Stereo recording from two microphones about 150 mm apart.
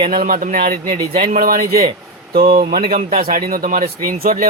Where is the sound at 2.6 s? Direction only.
60° right (ahead or behind).